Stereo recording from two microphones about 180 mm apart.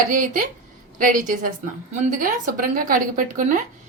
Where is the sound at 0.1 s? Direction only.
45° right (ahead or behind).